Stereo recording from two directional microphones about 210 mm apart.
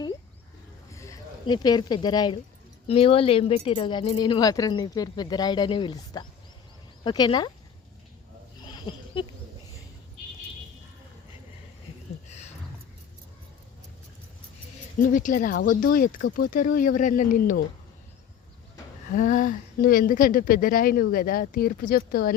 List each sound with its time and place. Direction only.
0.9 s speech: 15° left (ahead or behind)
8.6 s a sound: 20° left (ahead or behind)
15.0 s speech: 40° left (ahead or behind)
19.1 s speech: 40° left (ahead or behind)